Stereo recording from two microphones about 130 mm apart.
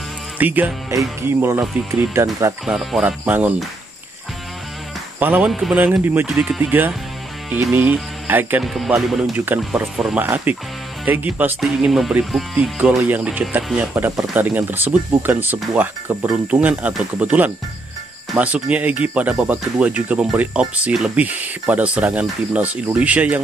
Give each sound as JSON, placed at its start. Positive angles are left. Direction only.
{"t": 0.4, "sound": "speech", "side_deg": -15}
{"t": 2.6, "sound": "speech", "side_deg": 0}
{"t": 3.0, "sound": "speech", "side_deg": -10}
{"t": 5.2, "sound": "speech", "side_deg": -10}
{"t": 8.6, "sound": "speech", "side_deg": 0}
{"t": 9.3, "sound": "speech", "side_deg": -15}